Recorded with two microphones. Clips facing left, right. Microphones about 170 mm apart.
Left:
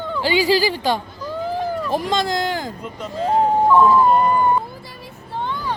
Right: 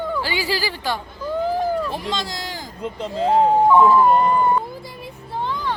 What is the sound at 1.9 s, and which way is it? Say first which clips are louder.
Speech: left 7 dB; 45° left (ahead or behind).